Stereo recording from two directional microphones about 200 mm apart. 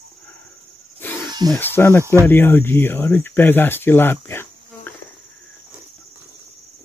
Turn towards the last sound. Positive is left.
turn(degrees=10)  # may be behind; listen again after turning